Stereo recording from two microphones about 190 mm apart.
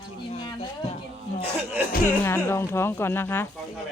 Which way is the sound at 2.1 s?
10° left (ahead or behind).